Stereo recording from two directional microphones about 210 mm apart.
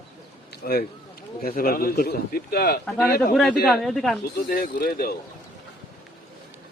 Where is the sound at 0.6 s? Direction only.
45° left (ahead or behind).